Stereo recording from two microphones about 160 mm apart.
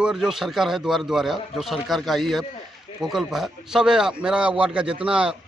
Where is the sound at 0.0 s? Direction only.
5° right (ahead or behind).